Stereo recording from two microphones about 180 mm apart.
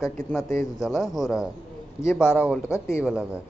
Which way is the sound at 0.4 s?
15° left (ahead or behind).